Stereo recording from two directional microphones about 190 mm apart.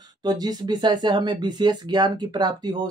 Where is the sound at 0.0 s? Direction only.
20° right (ahead or behind).